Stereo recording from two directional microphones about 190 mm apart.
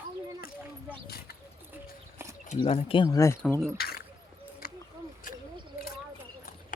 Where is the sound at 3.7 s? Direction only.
55° left (ahead or behind).